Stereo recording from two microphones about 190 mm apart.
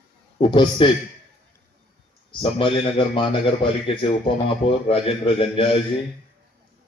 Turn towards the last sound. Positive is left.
turn(degrees=30)  # may be behind; listen again after turning